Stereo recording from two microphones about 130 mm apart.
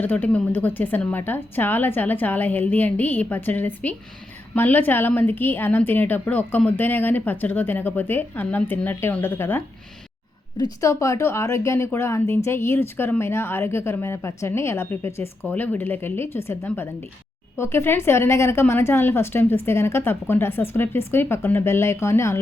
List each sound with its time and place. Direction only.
0.0 s a woman's voice: 15° left (ahead or behind)